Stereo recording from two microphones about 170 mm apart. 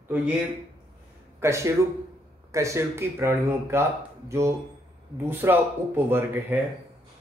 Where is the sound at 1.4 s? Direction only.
15° right (ahead or behind).